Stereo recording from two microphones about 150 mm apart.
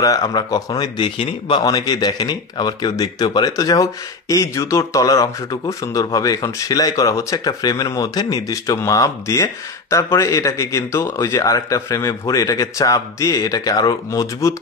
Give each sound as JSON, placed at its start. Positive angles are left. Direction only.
{"t": 0.0, "sound": "speech", "side_deg": 25}